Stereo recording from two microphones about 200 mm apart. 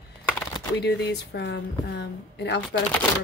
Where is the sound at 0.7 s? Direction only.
60° left (ahead or behind).